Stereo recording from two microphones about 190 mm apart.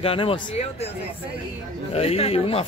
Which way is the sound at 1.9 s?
30° left (ahead or behind).